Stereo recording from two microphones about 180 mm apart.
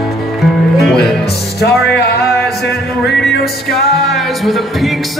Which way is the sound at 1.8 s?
65° left (ahead or behind).